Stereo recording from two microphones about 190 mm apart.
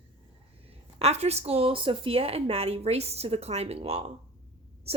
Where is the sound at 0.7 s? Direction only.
30° right (ahead or behind).